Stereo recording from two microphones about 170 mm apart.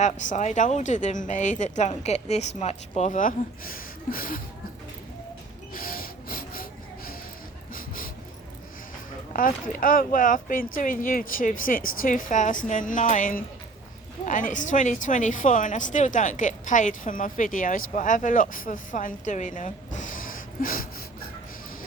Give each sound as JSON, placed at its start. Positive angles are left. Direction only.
{"t": 0.0, "sound": "a woman's voice", "side_deg": 45}
{"t": 5.7, "sound": "snort", "side_deg": 55}
{"t": 7.7, "sound": "dog", "side_deg": 55}
{"t": 9.3, "sound": "a woman's voice", "side_deg": 55}